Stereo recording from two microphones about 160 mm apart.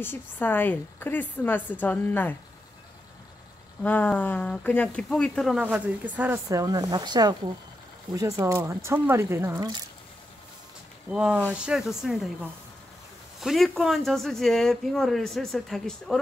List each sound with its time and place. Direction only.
0.0 s a woman's voice: 10° left (ahead or behind)
3.8 s speech: 10° left (ahead or behind); by 9.8 s 20° right (ahead or behind)
11.1 s speech: 5° right (ahead or behind)
13.4 s speech: centre (ahead or behind)